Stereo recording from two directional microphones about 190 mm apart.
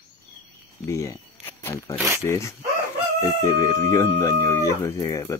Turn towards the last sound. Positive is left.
turn(degrees=15)  # may be behind; listen again after turning